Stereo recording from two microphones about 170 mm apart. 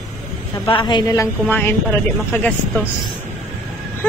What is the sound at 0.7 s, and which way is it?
A woman's voice, 25° left (ahead or behind).